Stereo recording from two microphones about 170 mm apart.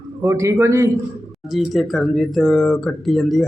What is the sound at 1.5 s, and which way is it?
Speech, centre (ahead or behind).